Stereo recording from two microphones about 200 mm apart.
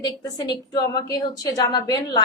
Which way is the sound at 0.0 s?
20° left (ahead or behind).